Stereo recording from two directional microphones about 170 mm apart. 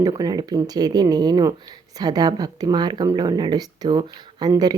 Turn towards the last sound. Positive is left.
turn(degrees=-20)  # may be behind; listen again after turning